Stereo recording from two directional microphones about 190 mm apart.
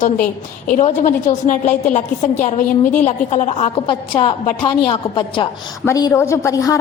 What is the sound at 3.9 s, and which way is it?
A woman's voice, 25° left (ahead or behind).